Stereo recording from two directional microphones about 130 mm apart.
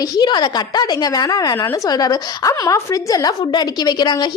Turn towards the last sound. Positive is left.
turn(degrees=35)  # may be behind; listen again after turning